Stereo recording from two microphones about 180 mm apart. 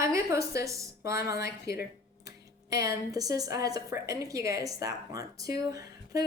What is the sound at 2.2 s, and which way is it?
A woman's voice, 20° right (ahead or behind).